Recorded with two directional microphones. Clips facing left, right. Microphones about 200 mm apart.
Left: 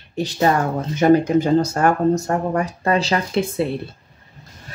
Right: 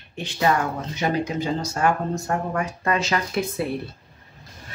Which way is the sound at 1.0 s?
50° left (ahead or behind).